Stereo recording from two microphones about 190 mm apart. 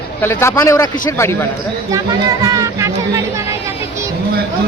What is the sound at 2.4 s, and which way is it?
Speech, 15° right (ahead or behind).